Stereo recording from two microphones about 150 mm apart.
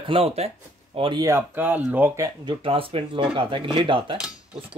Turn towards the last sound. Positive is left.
turn(degrees=-35)  # may be behind; listen again after turning